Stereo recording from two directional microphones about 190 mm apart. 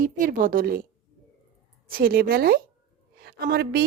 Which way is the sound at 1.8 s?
50° right (ahead or behind).